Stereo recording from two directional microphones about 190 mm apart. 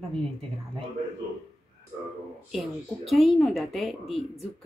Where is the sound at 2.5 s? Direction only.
Centre (ahead or behind).